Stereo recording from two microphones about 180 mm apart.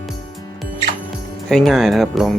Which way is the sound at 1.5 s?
Centre (ahead or behind).